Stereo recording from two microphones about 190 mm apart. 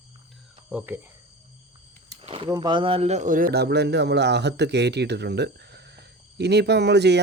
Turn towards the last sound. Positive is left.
turn(degrees=-60)  # may be behind; listen again after turning